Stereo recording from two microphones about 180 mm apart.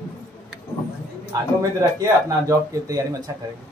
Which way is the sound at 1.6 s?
20° right (ahead or behind).